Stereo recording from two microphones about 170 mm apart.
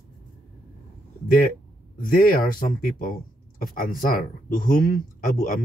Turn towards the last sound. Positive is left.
turn(degrees=55)  # may be behind; listen again after turning